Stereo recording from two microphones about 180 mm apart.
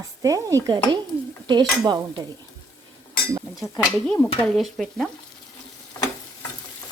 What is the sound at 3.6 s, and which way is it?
Stir, centre (ahead or behind).